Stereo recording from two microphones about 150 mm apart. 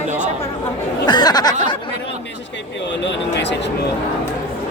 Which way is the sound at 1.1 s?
30° left (ahead or behind).